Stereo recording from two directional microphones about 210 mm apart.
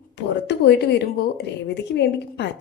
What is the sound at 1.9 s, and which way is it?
Speech, 55° left (ahead or behind).